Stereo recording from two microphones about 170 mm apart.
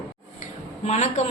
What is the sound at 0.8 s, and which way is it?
Speech, 40° left (ahead or behind).